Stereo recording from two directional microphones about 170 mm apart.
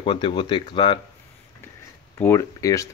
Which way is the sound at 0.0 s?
30° left (ahead or behind).